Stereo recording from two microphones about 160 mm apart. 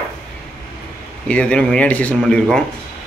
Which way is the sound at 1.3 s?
5° left (ahead or behind).